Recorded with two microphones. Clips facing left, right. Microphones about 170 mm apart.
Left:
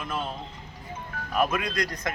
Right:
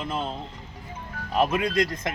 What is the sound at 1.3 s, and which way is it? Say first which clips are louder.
Speech: right 3 dB; 25° right (ahead or behind).